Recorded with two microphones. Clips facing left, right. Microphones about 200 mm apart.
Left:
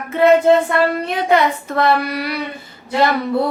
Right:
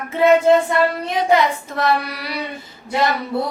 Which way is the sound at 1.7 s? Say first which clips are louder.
Left 5 dB; 60° left (ahead or behind).